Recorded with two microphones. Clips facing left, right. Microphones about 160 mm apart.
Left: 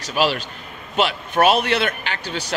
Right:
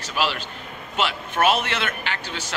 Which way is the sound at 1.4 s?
35° left (ahead or behind).